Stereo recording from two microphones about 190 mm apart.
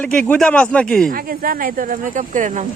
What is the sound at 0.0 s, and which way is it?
Speech, 5° left (ahead or behind).